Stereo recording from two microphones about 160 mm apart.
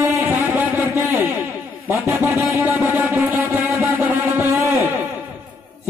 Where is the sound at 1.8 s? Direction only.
15° right (ahead or behind).